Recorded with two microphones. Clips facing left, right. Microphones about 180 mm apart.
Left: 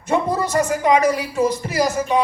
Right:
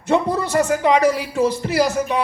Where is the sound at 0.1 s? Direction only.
70° right (ahead or behind).